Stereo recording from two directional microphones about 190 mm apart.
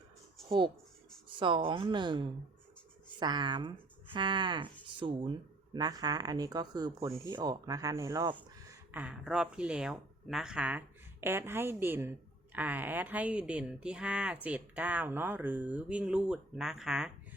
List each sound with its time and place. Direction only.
0.4 s speech: 25° right (ahead or behind)
8.9 s speech: 5° right (ahead or behind)